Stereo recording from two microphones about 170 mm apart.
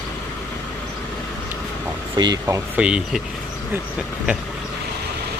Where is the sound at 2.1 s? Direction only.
25° right (ahead or behind).